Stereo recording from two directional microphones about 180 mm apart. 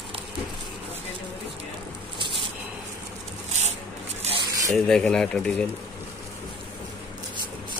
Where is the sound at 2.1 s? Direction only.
25° right (ahead or behind).